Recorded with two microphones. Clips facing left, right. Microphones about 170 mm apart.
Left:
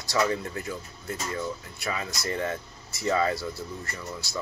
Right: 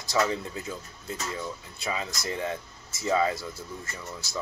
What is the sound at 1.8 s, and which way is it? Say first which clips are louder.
Speech: even; 20° right (ahead or behind).